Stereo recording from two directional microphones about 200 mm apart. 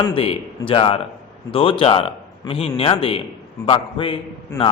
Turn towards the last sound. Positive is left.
turn(degrees=25)  # may be behind; listen again after turning